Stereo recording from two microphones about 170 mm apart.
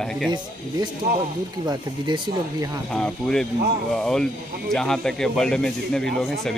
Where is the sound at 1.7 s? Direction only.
25° right (ahead or behind).